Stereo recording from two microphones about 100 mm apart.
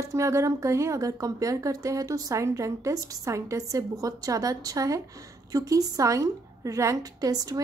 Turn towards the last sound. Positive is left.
turn(degrees=-40)  # may be behind; listen again after turning